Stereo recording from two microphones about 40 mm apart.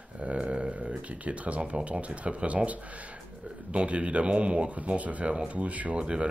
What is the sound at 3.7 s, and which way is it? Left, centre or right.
Speech, right.